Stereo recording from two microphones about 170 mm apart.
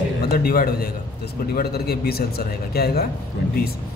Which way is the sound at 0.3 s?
65° left (ahead or behind).